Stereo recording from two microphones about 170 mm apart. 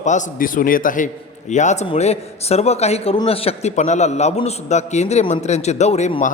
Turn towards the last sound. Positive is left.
turn(degrees=40)  # may be behind; listen again after turning